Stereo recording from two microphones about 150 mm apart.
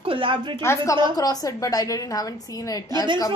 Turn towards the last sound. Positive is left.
turn(degrees=20)  # may be behind; listen again after turning